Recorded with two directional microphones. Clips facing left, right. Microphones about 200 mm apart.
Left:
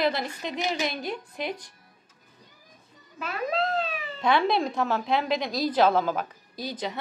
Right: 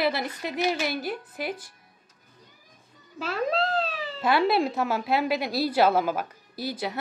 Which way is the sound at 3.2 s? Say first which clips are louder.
Right 2 dB; 30° right (ahead or behind).